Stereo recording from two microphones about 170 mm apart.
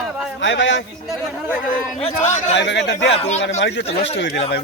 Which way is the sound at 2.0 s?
35° left (ahead or behind).